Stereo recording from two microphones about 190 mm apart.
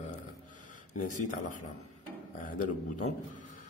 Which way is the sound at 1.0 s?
45° left (ahead or behind).